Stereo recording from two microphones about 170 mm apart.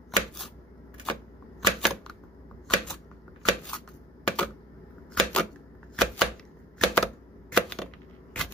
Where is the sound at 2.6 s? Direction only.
5° left (ahead or behind).